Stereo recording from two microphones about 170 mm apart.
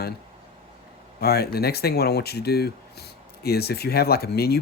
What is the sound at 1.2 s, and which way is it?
Speech, 65° left (ahead or behind).